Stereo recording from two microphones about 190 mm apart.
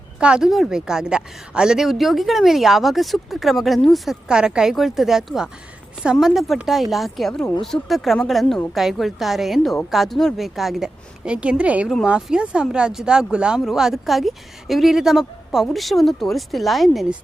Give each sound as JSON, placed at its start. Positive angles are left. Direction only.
{"t": 0.2, "sound": "speech", "side_deg": -5}